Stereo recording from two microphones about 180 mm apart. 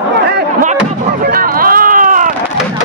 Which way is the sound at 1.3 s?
55° right (ahead or behind).